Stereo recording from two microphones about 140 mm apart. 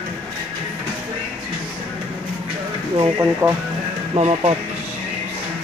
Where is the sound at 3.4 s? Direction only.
15° right (ahead or behind).